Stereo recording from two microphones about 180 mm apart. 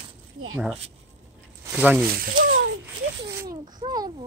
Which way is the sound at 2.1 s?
50° right (ahead or behind).